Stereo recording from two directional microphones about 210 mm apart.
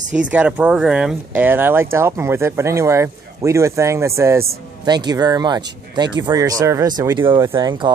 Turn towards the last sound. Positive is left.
turn(degrees=-20)  # may be behind; listen again after turning